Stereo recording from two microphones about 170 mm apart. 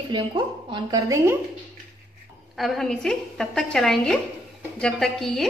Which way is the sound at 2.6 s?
Centre (ahead or behind).